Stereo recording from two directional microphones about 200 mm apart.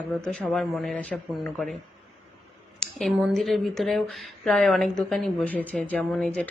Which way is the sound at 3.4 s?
Centre (ahead or behind).